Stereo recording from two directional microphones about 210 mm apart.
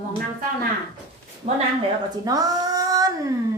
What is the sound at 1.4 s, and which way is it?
Speech, 30° right (ahead or behind).